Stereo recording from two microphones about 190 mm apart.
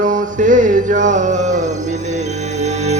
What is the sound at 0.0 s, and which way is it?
Music, 45° right (ahead or behind).